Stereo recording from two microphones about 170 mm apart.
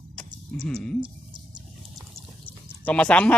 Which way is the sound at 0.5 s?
40° right (ahead or behind).